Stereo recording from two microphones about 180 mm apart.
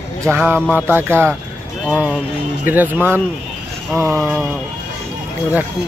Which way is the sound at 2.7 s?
10° right (ahead or behind).